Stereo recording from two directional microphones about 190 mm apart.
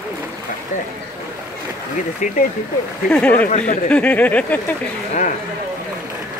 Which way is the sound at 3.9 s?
5° left (ahead or behind).